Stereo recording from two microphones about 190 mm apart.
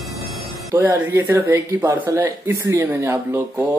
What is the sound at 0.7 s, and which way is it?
Speech, 10° right (ahead or behind).